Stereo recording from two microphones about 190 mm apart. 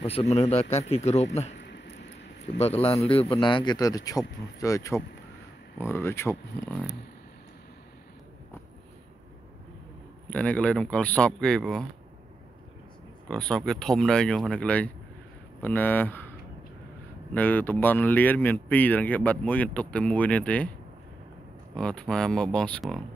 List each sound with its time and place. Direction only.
0.0 s a man's voice: 35° left (ahead or behind)
2.6 s speech: 30° left (ahead or behind); by 6.9 s 10° left (ahead or behind)
10.3 s speech: 5° left (ahead or behind)
13.3 s speech: 5° left (ahead or behind)
17.3 s speech: 10° left (ahead or behind)
21.7 s speech: 5° left (ahead or behind)